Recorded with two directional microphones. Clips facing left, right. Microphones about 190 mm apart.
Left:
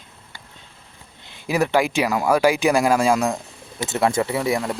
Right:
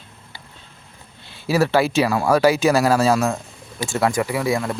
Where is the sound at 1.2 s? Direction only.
20° left (ahead or behind).